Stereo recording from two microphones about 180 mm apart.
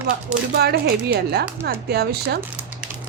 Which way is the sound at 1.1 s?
60° right (ahead or behind).